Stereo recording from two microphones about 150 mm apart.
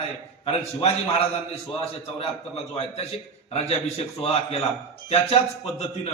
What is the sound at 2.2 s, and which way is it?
A man's voice, 40° left (ahead or behind).